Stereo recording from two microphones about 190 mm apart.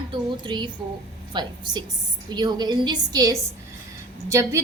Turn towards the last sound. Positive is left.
turn(degrees=-15)  # may be behind; listen again after turning